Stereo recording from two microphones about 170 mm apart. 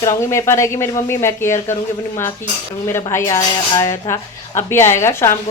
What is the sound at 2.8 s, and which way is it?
Speech, 15° left (ahead or behind).